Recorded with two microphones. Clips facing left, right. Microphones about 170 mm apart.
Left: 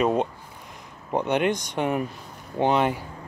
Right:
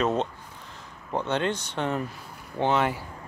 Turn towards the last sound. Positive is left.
turn(degrees=15)  # may be behind; listen again after turning